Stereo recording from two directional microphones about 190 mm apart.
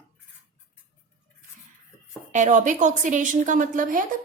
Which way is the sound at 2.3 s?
40° right (ahead or behind).